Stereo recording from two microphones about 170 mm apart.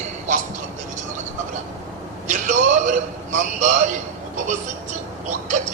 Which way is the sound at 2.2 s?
45° right (ahead or behind).